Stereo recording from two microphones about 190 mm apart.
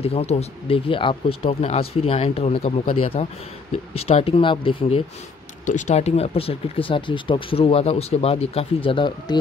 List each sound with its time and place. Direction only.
0.0 s speech: 30° left (ahead or behind)
5.7 s speech: 40° left (ahead or behind)